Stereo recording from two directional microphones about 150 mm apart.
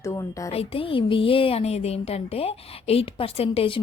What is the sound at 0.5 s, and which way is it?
Speech, 35° left (ahead or behind).